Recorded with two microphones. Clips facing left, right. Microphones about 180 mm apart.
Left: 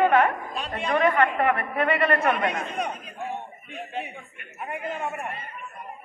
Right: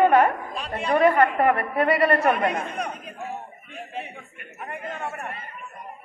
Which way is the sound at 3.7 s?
Centre (ahead or behind).